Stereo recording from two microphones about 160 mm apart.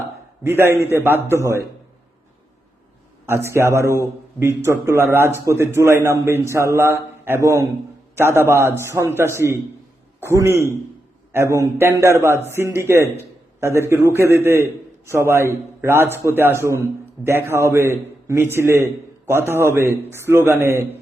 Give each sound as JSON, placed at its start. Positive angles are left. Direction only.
{"t": 0.4, "sound": "a man's voice", "side_deg": -15}
{"t": 3.2, "sound": "a man's voice", "side_deg": -15}